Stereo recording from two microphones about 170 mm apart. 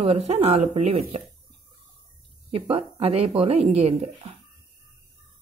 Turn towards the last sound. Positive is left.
turn(degrees=-35)  # may be behind; listen again after turning